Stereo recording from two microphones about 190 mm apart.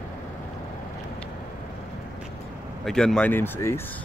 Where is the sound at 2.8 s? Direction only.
5° left (ahead or behind).